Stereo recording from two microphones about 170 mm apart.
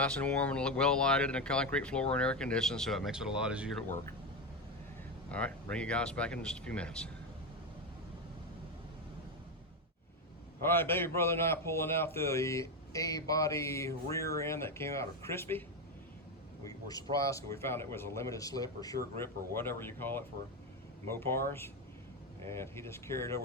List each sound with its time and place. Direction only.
0.0 s speech: 5° left (ahead or behind)
5.3 s a man's voice: 5° left (ahead or behind)
10.6 s a man's voice: 15° left (ahead or behind)
16.9 s a man's voice: 20° left (ahead or behind)
22.4 s a man's voice: 15° left (ahead or behind)